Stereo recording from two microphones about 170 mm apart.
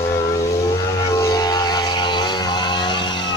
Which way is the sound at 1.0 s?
20° left (ahead or behind).